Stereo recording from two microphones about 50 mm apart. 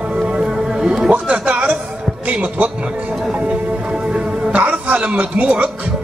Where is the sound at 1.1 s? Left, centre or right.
Right.